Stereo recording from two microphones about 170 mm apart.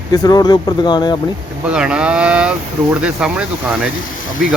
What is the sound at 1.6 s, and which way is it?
Speech, 5° right (ahead or behind).